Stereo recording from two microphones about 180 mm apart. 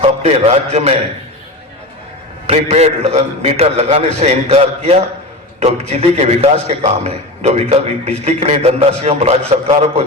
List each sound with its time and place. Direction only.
0.0 s a man's voice: 35° right (ahead or behind)
2.5 s a man's voice: 40° right (ahead or behind)